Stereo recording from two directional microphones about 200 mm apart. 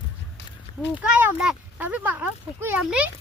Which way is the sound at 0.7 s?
30° left (ahead or behind).